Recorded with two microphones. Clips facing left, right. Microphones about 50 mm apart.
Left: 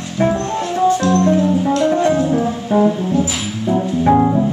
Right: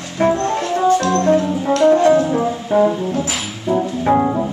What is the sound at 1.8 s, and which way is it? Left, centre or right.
Music, right.